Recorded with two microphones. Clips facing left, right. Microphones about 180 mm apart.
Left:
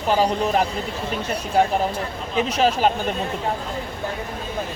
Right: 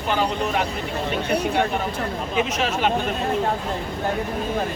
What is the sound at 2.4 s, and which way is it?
Speech, 35° left (ahead or behind).